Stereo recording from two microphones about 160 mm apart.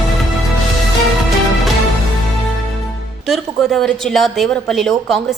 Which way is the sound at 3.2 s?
Centre (ahead or behind).